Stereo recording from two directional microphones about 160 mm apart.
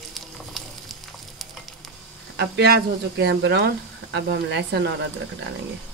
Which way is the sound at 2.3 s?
90° right.